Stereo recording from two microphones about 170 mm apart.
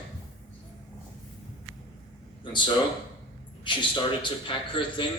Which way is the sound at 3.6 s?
30° left (ahead or behind).